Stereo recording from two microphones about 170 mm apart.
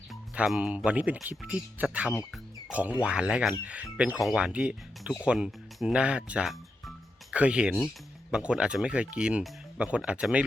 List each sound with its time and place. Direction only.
0.1 s speech: centre (ahead or behind)
2.3 s music: 5° right (ahead or behind)
3.0 s speech: 5° right (ahead or behind)